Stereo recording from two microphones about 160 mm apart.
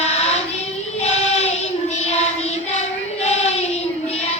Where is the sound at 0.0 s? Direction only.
40° left (ahead or behind).